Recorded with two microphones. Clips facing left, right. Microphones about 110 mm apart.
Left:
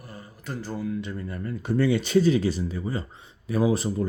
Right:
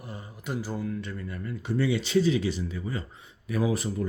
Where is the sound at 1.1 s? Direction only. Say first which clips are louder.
Left 3 dB; 35° left (ahead or behind).